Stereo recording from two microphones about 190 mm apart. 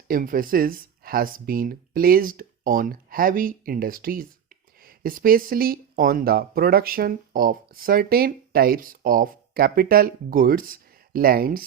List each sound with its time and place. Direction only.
0.1 s speech: 50° right (ahead or behind)